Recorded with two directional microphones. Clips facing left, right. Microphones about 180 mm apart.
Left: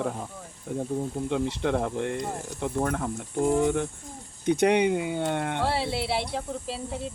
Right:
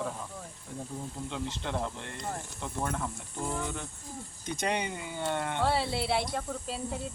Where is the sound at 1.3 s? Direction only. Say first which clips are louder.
Left 9 dB; 60° left (ahead or behind).